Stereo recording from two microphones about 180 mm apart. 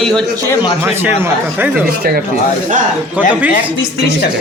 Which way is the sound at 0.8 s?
10° right (ahead or behind).